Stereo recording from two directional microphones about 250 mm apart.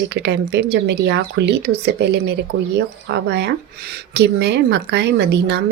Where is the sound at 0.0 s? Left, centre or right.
Right.